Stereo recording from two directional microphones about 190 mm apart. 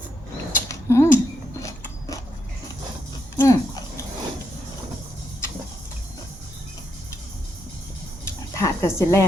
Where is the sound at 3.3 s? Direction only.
15° left (ahead or behind).